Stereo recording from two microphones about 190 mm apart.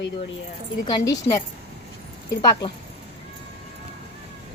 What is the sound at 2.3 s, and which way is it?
Speech, 20° left (ahead or behind).